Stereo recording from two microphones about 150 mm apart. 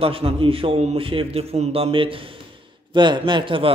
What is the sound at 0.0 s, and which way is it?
A man's voice, 40° right (ahead or behind).